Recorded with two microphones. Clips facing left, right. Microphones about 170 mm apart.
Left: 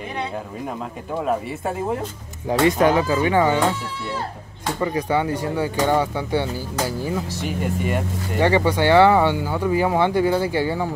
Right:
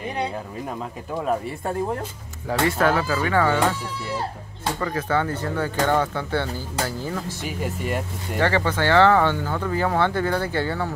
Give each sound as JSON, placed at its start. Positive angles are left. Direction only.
{"t": 1.2, "sound": "speech", "side_deg": 5}
{"t": 2.4, "sound": "speech", "side_deg": 20}
{"t": 4.7, "sound": "speech", "side_deg": 15}
{"t": 7.4, "sound": "speech", "side_deg": 0}
{"t": 8.4, "sound": "speech", "side_deg": 15}